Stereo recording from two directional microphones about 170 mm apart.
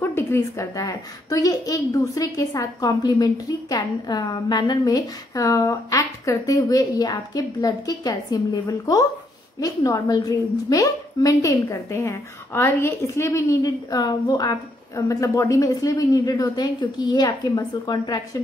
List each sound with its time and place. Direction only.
0.1 s a woman's voice: 15° left (ahead or behind)